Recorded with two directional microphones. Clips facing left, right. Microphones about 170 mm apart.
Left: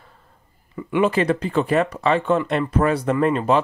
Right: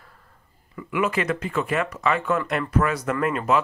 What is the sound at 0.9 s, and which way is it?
Speech, 30° left (ahead or behind).